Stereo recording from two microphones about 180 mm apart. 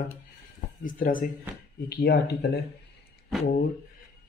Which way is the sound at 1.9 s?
65° left (ahead or behind).